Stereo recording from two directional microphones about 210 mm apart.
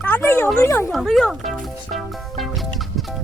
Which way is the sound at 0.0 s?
10° left (ahead or behind).